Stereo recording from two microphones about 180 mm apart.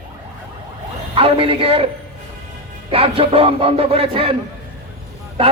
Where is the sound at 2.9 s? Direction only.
30° right (ahead or behind).